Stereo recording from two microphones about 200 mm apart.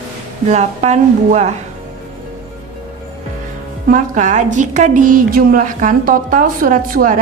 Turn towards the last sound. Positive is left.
turn(degrees=-40)  # may be behind; listen again after turning